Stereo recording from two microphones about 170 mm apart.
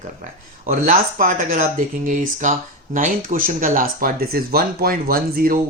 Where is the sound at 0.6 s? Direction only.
50° right (ahead or behind).